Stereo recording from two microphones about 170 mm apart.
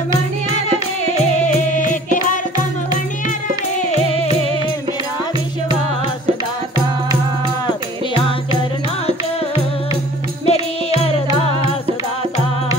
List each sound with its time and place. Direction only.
10.4 s music: 35° left (ahead or behind)